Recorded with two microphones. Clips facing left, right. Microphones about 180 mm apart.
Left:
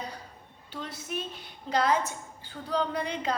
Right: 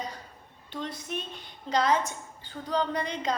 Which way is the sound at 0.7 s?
5° left (ahead or behind).